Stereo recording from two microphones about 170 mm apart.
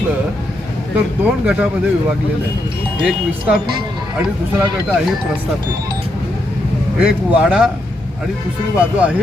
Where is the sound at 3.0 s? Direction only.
5° right (ahead or behind).